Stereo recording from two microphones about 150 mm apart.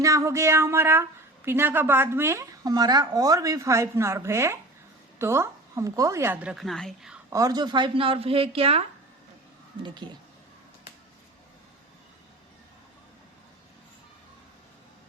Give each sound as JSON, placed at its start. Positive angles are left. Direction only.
{"t": 0.0, "sound": "a woman's voice", "side_deg": -20}
{"t": 7.3, "sound": "speech", "side_deg": -25}
{"t": 9.8, "sound": "speech", "side_deg": -30}